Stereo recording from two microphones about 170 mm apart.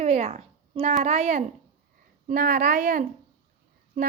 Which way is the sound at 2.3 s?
55° right (ahead or behind).